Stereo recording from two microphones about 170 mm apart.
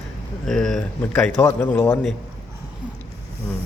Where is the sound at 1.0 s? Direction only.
15° left (ahead or behind).